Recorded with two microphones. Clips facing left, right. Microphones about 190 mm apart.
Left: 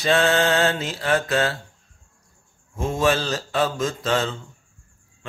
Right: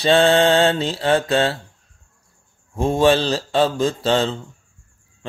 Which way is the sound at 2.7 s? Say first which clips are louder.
Right 5 dB; 30° right (ahead or behind).